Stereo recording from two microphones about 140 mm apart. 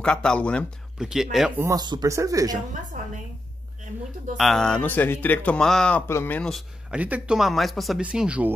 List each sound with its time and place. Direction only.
0.0 s speech: 5° left (ahead or behind)
0.9 s speech: 5° right (ahead or behind)
1.6 s speech: 25° right (ahead or behind)
2.9 s a woman's voice: 90° right
4.4 s speech: 5° left (ahead or behind)
6.5 s speech: 10° right (ahead or behind)